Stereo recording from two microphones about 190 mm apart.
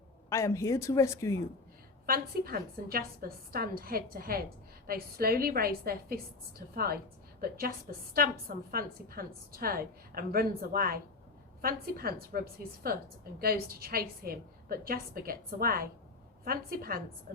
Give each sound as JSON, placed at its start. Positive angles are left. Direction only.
{"t": 0.3, "sound": "speech", "side_deg": 15}
{"t": 2.0, "sound": "a woman's voice", "side_deg": -50}
{"t": 7.5, "sound": "a woman's voice", "side_deg": -50}